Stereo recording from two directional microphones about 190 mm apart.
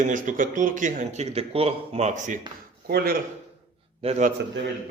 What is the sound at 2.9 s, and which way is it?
Speech, 55° right (ahead or behind).